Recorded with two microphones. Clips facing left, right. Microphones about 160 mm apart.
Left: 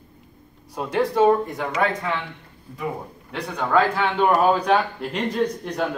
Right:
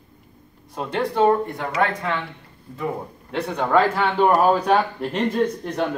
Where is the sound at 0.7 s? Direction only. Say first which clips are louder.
Left 2 dB; centre (ahead or behind).